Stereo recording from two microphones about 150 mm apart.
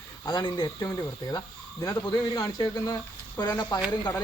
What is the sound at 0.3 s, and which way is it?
Speech, 25° left (ahead or behind).